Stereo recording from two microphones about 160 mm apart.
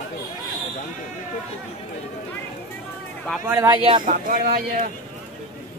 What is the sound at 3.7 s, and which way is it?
Speech, 30° right (ahead or behind).